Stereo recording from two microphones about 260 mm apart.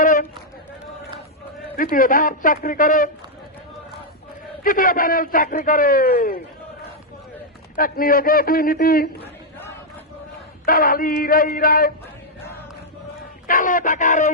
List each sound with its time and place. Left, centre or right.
0.0 s run: left
1.7 s a man's voice: left
4.6 s a man's voice: left
7.8 s a man's voice: left
10.7 s a man's voice: left
13.5 s a sound: left